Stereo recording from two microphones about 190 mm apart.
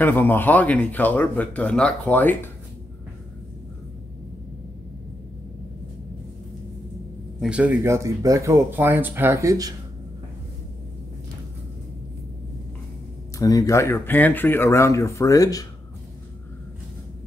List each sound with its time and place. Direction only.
0.0 s speech: 10° left (ahead or behind)
7.3 s speech: 5° right (ahead or behind)
13.4 s speech: 20° left (ahead or behind)